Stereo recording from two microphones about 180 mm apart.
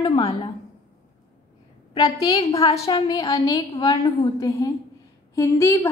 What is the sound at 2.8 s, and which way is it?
A woman's voice, 20° left (ahead or behind).